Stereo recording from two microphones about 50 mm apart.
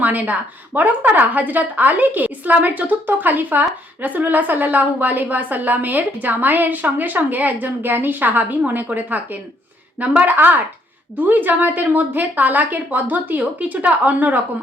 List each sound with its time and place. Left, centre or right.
0.0 s a woman's voice: right